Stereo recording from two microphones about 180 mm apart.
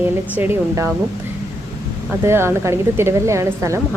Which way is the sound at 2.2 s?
15° right (ahead or behind).